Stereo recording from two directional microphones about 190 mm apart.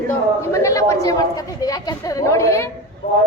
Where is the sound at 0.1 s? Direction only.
15° left (ahead or behind).